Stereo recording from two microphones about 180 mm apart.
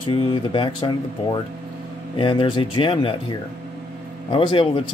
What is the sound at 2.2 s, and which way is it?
Speech, 30° left (ahead or behind).